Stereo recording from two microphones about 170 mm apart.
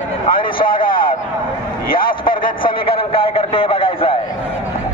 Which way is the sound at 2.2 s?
30° left (ahead or behind).